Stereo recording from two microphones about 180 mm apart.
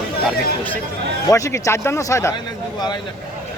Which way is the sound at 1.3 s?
15° left (ahead or behind).